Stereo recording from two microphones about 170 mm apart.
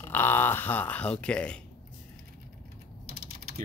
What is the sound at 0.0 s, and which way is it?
Speech, 10° left (ahead or behind).